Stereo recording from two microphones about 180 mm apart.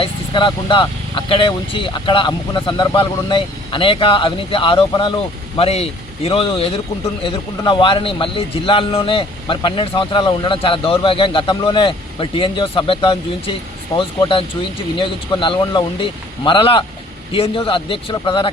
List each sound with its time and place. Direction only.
0.0 s a man's voice: 25° left (ahead or behind)